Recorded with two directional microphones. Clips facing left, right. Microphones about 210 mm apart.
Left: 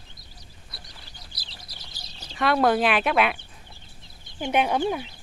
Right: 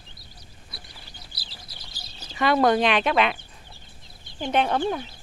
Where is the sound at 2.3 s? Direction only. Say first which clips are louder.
Right 1 dB; centre (ahead or behind).